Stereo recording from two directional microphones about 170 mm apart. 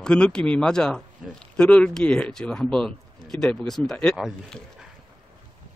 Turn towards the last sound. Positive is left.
turn(degrees=0)  # may be behind; listen again after turning